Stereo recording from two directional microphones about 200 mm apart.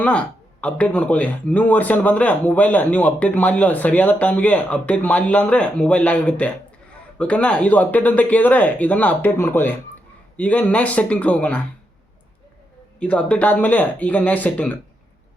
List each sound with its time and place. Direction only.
0.0 s a man's voice: 5° left (ahead or behind)
13.0 s a man's voice: 5° left (ahead or behind)